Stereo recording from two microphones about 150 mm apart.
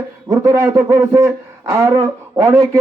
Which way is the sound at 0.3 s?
20° right (ahead or behind).